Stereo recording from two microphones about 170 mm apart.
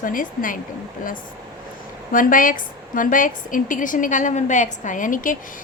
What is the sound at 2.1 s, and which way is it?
A woman's voice, 55° left (ahead or behind).